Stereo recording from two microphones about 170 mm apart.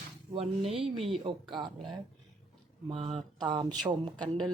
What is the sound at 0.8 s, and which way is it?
Speech, 35° right (ahead or behind).